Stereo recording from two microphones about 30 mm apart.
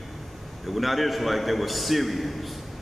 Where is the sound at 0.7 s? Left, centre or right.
Centre.